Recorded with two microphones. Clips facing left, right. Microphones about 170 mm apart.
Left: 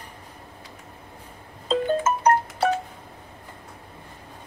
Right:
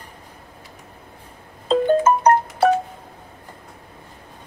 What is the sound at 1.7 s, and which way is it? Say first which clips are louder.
Music: right 6 dB; 50° right (ahead or behind).